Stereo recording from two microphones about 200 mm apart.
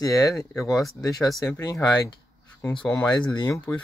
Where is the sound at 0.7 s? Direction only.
Centre (ahead or behind).